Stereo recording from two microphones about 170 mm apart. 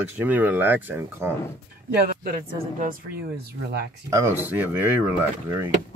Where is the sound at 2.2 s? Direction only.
55° right (ahead or behind).